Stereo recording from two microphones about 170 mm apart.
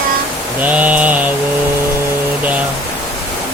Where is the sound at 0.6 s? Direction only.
10° right (ahead or behind).